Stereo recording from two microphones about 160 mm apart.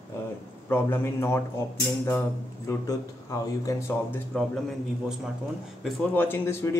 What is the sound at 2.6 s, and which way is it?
Speech, 20° left (ahead or behind).